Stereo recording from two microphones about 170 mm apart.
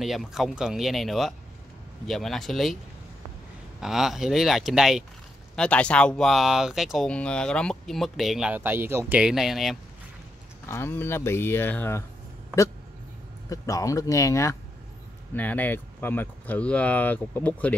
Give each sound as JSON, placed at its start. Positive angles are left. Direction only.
{"t": 0.0, "sound": "speech", "side_deg": 0}
{"t": 3.8, "sound": "speech", "side_deg": 0}
{"t": 10.7, "sound": "speech", "side_deg": 15}
{"t": 13.5, "sound": "speech", "side_deg": 20}